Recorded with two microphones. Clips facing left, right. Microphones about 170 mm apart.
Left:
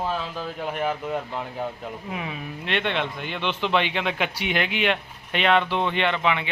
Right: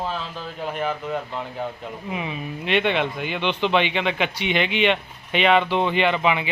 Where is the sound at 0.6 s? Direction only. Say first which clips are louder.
Right 1 dB; 10° left (ahead or behind).